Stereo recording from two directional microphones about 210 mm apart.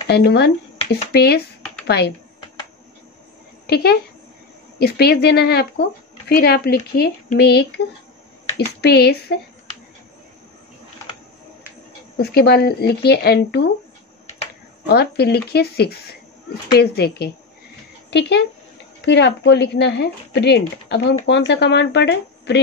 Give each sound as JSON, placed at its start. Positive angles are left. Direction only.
{"t": 0.1, "sound": "speech", "side_deg": 55}
{"t": 3.6, "sound": "speech", "side_deg": 50}
{"t": 12.2, "sound": "speech", "side_deg": 50}
{"t": 14.9, "sound": "speech", "side_deg": 50}
{"t": 18.9, "sound": "speech", "side_deg": 55}